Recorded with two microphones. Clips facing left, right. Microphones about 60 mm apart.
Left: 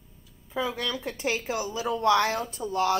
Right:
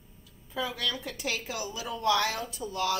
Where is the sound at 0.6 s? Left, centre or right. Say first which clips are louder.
Left 3 dB; left.